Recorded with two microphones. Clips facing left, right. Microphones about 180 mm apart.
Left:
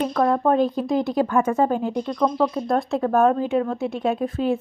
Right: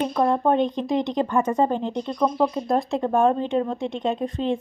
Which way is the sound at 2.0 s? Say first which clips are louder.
Even; 10° right (ahead or behind).